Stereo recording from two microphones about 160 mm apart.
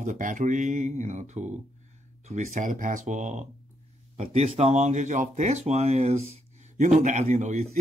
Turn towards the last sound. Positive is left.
turn(degrees=-45)  # may be behind; listen again after turning